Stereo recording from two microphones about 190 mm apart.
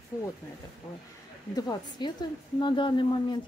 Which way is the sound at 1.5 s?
20° left (ahead or behind).